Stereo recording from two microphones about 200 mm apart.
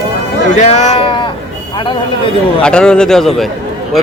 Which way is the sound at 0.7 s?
35° left (ahead or behind).